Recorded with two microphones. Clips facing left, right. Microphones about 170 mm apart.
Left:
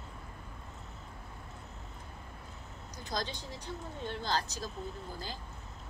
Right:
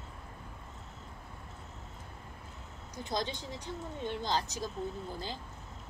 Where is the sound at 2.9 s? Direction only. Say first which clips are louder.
Right 3 dB; 25° right (ahead or behind).